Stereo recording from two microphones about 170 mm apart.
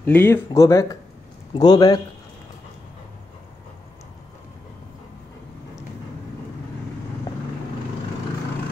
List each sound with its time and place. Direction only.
0.0 s a man's voice: 10° left (ahead or behind)